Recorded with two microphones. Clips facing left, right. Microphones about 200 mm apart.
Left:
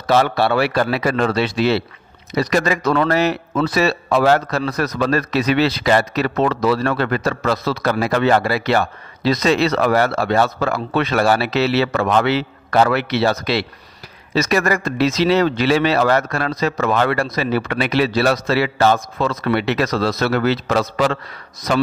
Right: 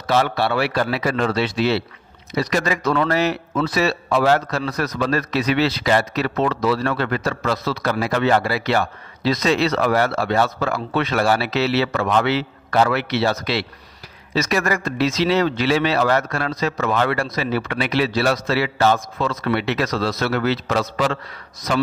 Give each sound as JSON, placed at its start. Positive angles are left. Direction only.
{"t": 0.0, "sound": "a man's voice", "side_deg": 60}